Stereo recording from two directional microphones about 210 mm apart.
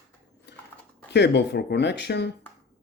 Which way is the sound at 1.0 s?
55° left (ahead or behind).